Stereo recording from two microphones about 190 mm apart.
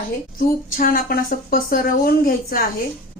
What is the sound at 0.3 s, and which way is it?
A woman's voice, 50° left (ahead or behind).